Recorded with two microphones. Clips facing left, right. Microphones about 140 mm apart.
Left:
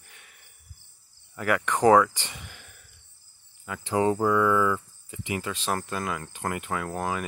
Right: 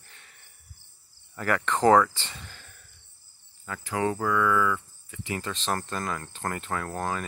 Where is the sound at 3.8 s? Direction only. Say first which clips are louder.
Left 4 dB; 25° left (ahead or behind).